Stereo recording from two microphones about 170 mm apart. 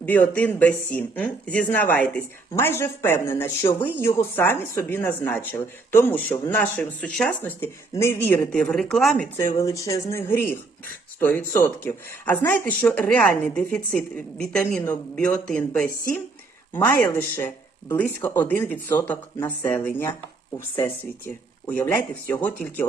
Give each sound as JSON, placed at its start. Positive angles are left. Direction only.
{"t": 0.0, "sound": "speech", "side_deg": 10}
{"t": 9.6, "sound": "speech", "side_deg": 20}
{"t": 21.7, "sound": "speech", "side_deg": 10}